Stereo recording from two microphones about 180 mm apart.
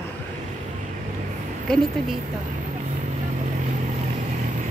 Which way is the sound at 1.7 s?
5° left (ahead or behind).